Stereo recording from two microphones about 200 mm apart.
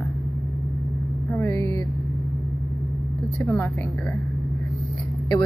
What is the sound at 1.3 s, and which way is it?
Speech, 10° left (ahead or behind).